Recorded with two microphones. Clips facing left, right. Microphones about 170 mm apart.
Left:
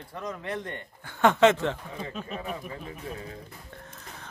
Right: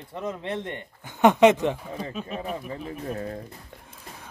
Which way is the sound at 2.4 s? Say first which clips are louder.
Right 4 dB; 40° right (ahead or behind).